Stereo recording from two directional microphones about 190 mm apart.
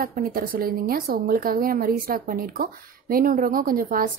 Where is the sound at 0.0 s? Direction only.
50° right (ahead or behind).